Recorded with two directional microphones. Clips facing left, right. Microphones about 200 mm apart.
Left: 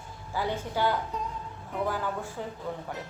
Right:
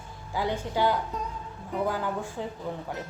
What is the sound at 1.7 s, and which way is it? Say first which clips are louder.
Speech: right 2 dB; centre (ahead or behind).